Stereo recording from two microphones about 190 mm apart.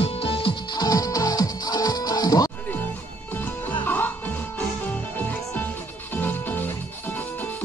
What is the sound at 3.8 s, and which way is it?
Music, 10° left (ahead or behind).